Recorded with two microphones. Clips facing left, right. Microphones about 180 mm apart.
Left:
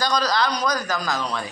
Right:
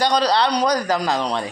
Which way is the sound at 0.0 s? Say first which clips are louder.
Right 4 dB; 30° right (ahead or behind).